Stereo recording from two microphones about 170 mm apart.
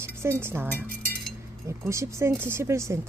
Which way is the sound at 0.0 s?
15° right (ahead or behind).